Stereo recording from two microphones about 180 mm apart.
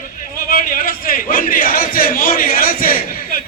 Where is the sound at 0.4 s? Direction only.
50° left (ahead or behind).